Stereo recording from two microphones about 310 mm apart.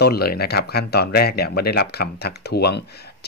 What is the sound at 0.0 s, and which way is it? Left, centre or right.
Speech, left.